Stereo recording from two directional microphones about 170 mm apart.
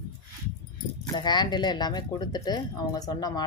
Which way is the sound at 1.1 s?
25° left (ahead or behind).